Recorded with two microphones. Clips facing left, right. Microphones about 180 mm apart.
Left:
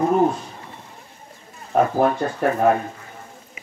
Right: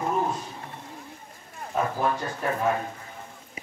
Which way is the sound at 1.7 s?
60° left (ahead or behind).